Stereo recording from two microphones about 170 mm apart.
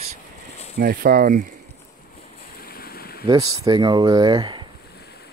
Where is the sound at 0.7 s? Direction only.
60° right (ahead or behind).